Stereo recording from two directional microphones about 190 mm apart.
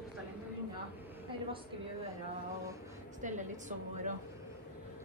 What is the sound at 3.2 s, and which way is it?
Speech, 40° right (ahead or behind).